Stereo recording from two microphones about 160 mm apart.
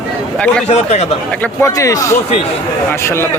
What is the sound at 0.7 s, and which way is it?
Speech, 40° left (ahead or behind).